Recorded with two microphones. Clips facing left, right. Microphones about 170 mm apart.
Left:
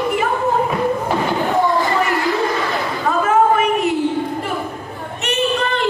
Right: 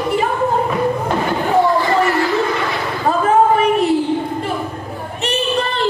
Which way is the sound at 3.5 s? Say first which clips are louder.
Right 3 dB; 35° right (ahead or behind).